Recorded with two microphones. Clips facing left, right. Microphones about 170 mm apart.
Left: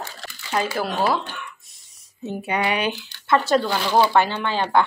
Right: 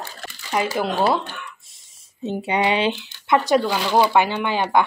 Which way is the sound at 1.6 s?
25° right (ahead or behind).